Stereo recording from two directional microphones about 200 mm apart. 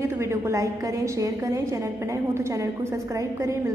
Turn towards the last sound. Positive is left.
turn(degrees=-15)  # may be behind; listen again after turning